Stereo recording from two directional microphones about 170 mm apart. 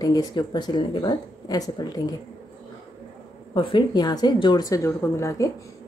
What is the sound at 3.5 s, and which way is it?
A woman's voice, 30° left (ahead or behind).